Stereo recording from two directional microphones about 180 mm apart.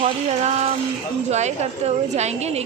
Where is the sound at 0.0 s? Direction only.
40° right (ahead or behind).